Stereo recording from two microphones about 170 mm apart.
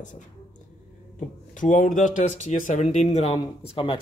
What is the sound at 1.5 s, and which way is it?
A man's voice, 50° left (ahead or behind).